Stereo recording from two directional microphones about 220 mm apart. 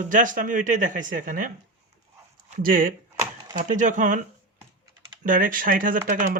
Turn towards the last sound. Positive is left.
turn(degrees=-40)  # may be behind; listen again after turning